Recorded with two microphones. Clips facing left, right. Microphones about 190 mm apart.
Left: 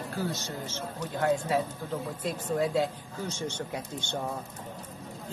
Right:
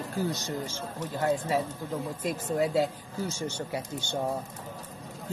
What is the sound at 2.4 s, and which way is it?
Speech, 10° right (ahead or behind).